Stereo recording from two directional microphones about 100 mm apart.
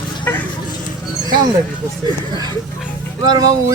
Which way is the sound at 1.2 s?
45° right (ahead or behind).